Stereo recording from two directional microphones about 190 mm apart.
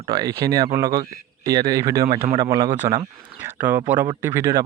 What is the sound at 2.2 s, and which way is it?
Speech, 30° right (ahead or behind).